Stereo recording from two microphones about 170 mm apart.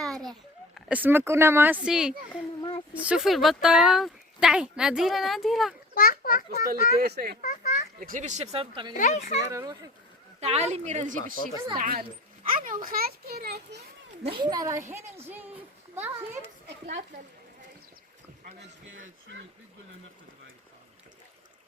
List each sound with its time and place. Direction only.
0.0 s a sound: centre (ahead or behind)
0.9 s speech: 10° right (ahead or behind)
2.6 s a sound: 30° left (ahead or behind)
2.9 s speech: 10° right (ahead or behind)
5.9 s a child's voice: 60° left (ahead or behind)
6.9 s speech: 65° right (ahead or behind)
7.4 s a child's voice: 45° left (ahead or behind)
8.0 s speech: 50° right (ahead or behind); by 8.9 s 35° right (ahead or behind)
8.9 s a child's voice: 45° left (ahead or behind)
9.5 s a child's voice: 20° right (ahead or behind)
10.4 s speech: 40° right (ahead or behind)
11.8 s a child's voice: 60° right (ahead or behind)
14.3 s a child's voice: 25° right (ahead or behind)
16.8 s speech: 45° right (ahead or behind)